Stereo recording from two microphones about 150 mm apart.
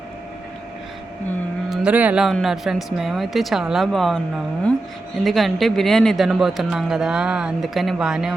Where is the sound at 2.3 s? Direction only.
Centre (ahead or behind).